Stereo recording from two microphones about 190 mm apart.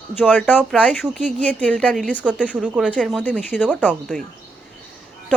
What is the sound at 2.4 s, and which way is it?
Speech, 5° right (ahead or behind).